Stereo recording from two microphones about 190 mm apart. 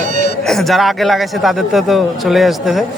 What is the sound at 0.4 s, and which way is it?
Speech, centre (ahead or behind).